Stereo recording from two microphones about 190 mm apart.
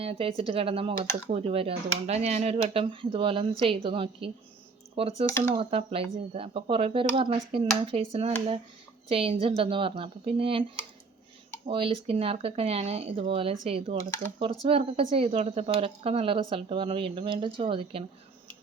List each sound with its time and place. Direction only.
0.0 s speech: 30° right (ahead or behind)
11.6 s speech: 30° right (ahead or behind)